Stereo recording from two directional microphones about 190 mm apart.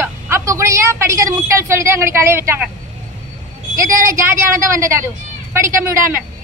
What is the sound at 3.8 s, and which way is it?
A woman's voice, 15° right (ahead or behind).